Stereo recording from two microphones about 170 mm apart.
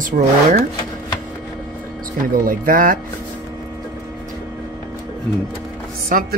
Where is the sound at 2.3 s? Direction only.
55° right (ahead or behind).